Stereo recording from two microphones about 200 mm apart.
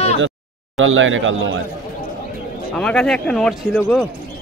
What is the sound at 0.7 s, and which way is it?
Speech, 75° right (ahead or behind).